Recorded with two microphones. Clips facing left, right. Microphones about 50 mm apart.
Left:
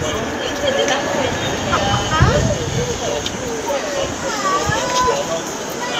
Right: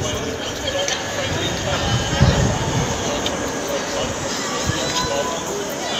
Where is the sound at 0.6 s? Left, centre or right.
Left.